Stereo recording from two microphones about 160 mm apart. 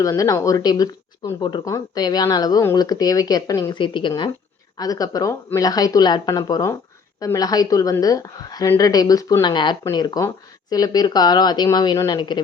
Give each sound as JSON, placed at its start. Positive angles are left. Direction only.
{"t": 0.0, "sound": "speech", "side_deg": 20}